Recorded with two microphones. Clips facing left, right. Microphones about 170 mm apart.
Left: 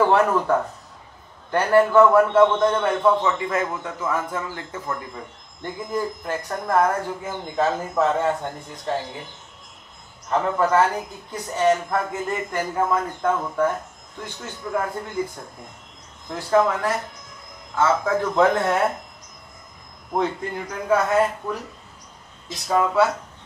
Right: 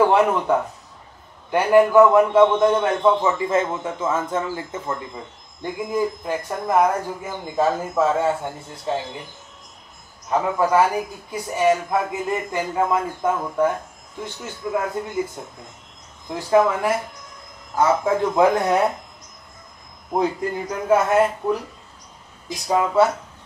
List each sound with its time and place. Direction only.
0.0 s a man's voice: 15° right (ahead or behind)
10.2 s speech: 10° right (ahead or behind)
20.6 s a man's voice: 30° right (ahead or behind)
22.7 s speech: 15° right (ahead or behind)